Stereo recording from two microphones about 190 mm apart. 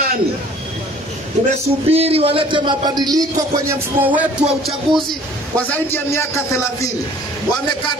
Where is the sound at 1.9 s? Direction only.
30° right (ahead or behind); by 5.0 s 5° right (ahead or behind).